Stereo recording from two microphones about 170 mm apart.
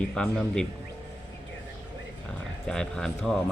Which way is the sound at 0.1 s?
5° left (ahead or behind).